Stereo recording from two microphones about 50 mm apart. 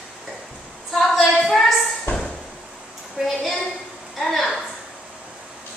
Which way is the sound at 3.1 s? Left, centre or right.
Centre.